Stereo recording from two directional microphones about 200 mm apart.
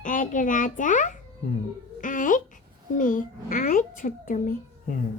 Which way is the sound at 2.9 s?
40° left (ahead or behind).